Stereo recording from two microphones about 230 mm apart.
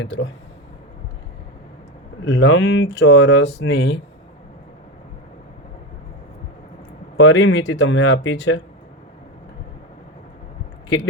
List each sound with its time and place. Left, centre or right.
0.0 s speech: left
2.2 s speech: left
7.2 s speech: left
10.8 s speech: left